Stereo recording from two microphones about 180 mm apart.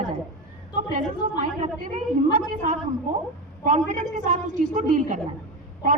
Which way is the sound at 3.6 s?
45° right (ahead or behind).